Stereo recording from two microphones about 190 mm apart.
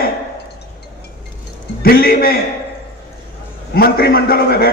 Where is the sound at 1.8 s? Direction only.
55° left (ahead or behind).